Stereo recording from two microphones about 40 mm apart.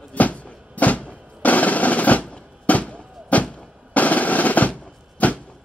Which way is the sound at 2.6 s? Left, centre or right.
Left.